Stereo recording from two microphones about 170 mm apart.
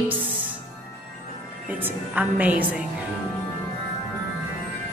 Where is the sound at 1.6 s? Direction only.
10° right (ahead or behind).